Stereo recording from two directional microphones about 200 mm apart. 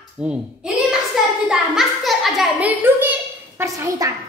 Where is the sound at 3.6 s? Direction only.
15° right (ahead or behind).